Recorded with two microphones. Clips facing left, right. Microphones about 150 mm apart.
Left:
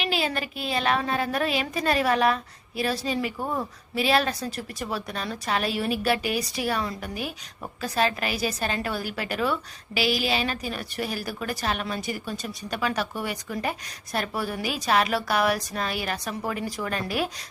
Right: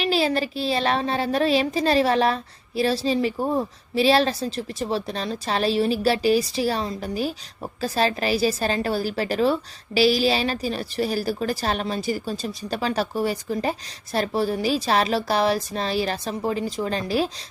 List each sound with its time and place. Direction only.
0.0 s a woman's voice: 35° right (ahead or behind)